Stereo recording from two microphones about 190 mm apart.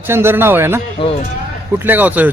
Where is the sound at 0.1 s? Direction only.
10° right (ahead or behind).